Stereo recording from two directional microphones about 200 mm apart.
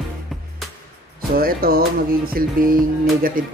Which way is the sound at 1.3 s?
45° right (ahead or behind).